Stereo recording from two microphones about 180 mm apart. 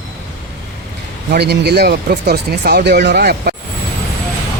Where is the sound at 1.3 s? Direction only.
65° right (ahead or behind).